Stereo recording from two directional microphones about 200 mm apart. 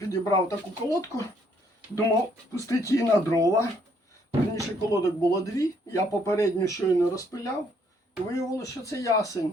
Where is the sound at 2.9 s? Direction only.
15° left (ahead or behind).